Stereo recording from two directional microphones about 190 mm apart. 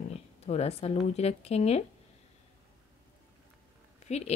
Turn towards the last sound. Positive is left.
turn(degrees=35)  # may be behind; listen again after turning